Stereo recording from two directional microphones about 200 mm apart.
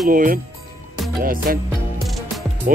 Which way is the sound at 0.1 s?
45° right (ahead or behind).